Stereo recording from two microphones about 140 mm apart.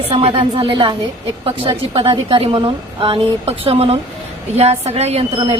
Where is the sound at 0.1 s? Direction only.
45° right (ahead or behind).